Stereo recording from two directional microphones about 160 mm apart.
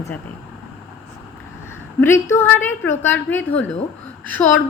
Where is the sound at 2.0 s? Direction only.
15° left (ahead or behind).